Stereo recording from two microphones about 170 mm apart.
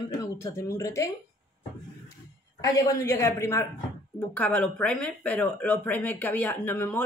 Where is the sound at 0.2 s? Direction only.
15° left (ahead or behind).